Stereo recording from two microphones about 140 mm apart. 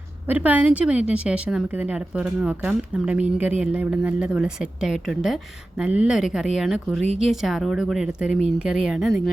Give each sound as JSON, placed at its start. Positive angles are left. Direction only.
{"t": 0.3, "sound": "a woman's voice", "side_deg": -10}